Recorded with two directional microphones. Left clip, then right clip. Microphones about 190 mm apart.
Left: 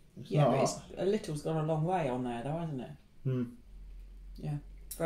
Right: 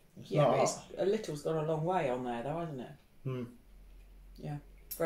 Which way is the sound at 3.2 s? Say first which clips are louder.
Left 3 dB; 5° right (ahead or behind).